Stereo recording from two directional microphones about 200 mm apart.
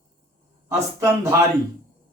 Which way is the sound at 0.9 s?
15° right (ahead or behind).